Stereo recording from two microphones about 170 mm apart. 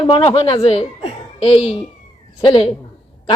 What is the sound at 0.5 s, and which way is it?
Speech, 35° left (ahead or behind).